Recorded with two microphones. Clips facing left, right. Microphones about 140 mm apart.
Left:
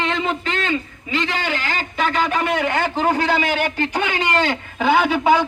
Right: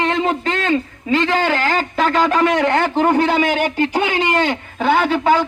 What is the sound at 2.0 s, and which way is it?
Speech, 90° right.